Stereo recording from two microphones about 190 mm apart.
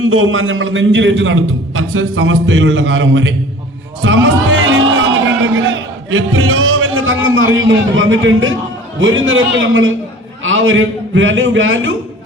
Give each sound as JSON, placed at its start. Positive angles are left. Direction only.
{"t": 0.0, "sound": "a man's voice", "side_deg": -90}
{"t": 10.4, "sound": "a man's voice", "side_deg": -90}